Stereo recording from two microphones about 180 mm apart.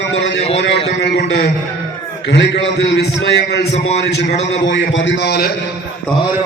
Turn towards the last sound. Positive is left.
turn(degrees=60)  # may be behind; listen again after turning